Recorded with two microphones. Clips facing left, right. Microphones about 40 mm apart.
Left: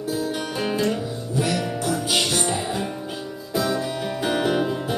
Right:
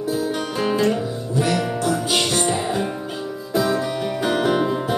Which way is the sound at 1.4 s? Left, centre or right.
Centre.